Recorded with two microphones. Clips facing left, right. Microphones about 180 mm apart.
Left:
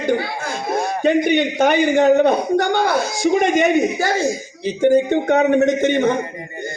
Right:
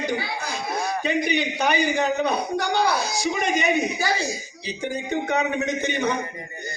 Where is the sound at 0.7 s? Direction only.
25° left (ahead or behind).